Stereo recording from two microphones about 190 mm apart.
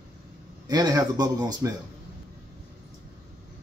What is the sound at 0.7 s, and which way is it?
Speech, 20° right (ahead or behind).